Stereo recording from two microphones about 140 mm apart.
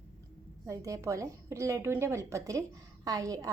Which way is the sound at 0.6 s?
25° right (ahead or behind).